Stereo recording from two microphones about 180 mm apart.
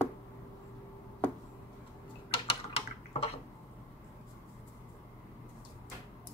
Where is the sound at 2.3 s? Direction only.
30° left (ahead or behind).